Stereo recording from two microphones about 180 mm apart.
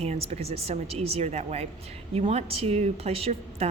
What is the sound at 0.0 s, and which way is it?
A woman's voice, 35° right (ahead or behind).